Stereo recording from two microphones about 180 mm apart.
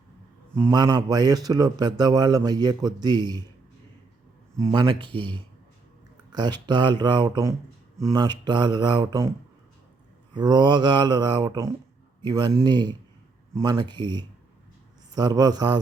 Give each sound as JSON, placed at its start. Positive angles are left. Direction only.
{"t": 0.5, "sound": "a man's voice", "side_deg": -20}
{"t": 4.6, "sound": "a man's voice", "side_deg": -25}
{"t": 10.3, "sound": "a man's voice", "side_deg": -25}